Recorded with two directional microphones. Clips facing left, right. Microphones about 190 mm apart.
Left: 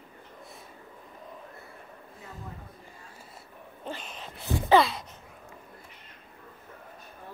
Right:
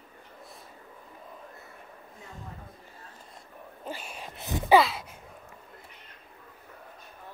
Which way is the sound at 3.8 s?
10° right (ahead or behind).